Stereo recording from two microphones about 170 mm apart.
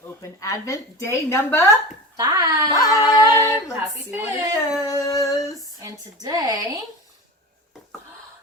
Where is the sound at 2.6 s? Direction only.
20° left (ahead or behind).